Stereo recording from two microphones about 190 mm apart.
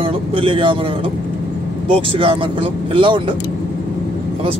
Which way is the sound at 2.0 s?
30° right (ahead or behind).